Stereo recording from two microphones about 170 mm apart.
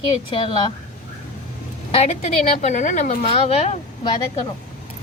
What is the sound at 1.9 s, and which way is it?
Speech, 40° left (ahead or behind).